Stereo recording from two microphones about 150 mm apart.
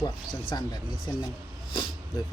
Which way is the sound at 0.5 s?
25° left (ahead or behind).